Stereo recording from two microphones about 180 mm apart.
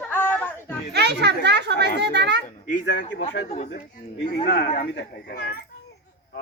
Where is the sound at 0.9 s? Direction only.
70° right (ahead or behind).